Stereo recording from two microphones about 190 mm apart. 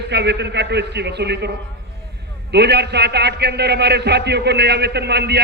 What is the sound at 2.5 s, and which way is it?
A man's voice, 60° right (ahead or behind).